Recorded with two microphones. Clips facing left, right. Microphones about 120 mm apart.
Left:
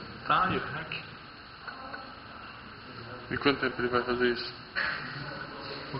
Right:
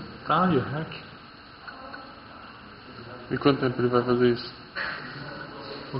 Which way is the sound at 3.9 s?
45° right (ahead or behind).